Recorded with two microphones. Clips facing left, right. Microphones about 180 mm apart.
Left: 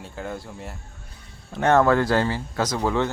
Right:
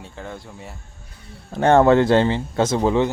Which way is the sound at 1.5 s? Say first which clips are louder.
Right 4 dB; 30° right (ahead or behind).